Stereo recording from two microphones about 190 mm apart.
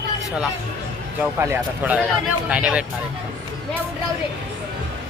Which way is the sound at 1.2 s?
10° right (ahead or behind).